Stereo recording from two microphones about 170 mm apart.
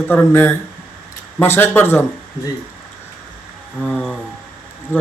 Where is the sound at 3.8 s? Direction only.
5° left (ahead or behind).